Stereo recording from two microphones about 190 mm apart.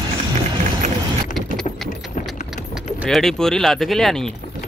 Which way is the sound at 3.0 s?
Centre (ahead or behind).